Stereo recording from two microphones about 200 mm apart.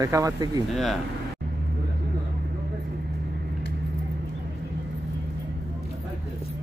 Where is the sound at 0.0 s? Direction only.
15° right (ahead or behind).